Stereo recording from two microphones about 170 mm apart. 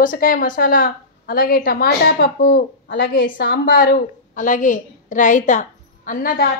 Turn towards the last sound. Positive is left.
turn(degrees=55)  # may be behind; listen again after turning